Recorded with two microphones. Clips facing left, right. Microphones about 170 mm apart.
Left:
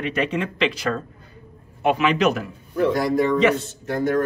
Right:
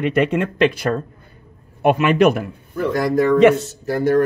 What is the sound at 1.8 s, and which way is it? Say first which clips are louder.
Speech: right 5 dB; 50° right (ahead or behind).